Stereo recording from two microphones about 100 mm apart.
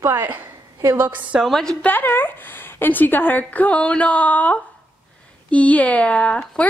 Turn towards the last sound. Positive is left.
turn(degrees=15)  # may be behind; listen again after turning